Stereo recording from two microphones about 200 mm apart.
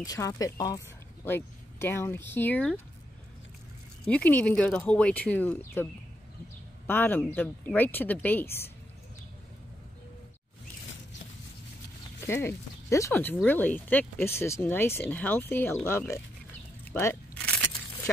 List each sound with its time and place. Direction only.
0.0 s a woman's voice: 20° left (ahead or behind)
4.0 s speech: 5° left (ahead or behind)
6.9 s speech: 10° left (ahead or behind)
12.2 s speech: 10° left (ahead or behind)
16.9 s a sound: 10° left (ahead or behind)